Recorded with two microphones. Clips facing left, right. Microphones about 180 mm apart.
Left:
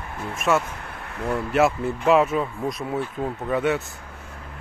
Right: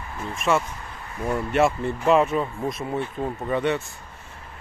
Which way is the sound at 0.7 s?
65° left (ahead or behind).